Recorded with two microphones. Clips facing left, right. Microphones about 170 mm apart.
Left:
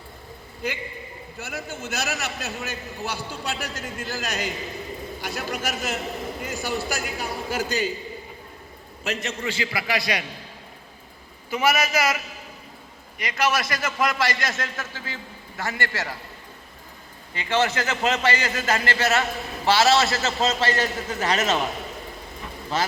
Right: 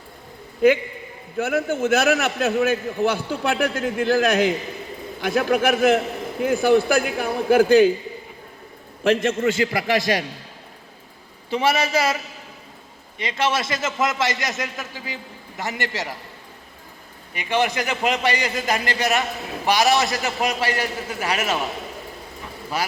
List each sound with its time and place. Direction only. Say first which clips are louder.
1.4 s a man's voice: right 13 dB; 55° right (ahead or behind)
9.0 s a man's voice: right 10 dB; 50° right (ahead or behind)
11.5 s a man's voice: right 2 dB; 30° right (ahead or behind)
17.3 s a man's voice: right 1 dB; 15° right (ahead or behind)
22.8 s a man's voice: left 1 dB; 10° right (ahead or behind)